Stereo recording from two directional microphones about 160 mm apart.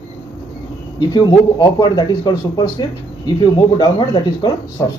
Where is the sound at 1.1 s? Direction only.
20° left (ahead or behind).